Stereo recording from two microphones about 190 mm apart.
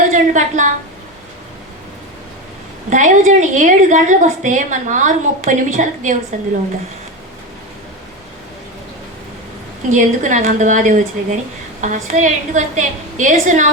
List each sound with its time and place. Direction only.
0.1 s a woman's voice: 40° right (ahead or behind)
2.9 s a woman's voice: 40° right (ahead or behind)
9.9 s a woman's voice: 40° right (ahead or behind)